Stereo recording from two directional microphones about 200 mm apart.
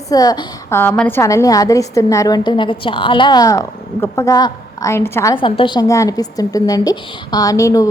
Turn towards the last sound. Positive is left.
turn(degrees=15)  # may be behind; listen again after turning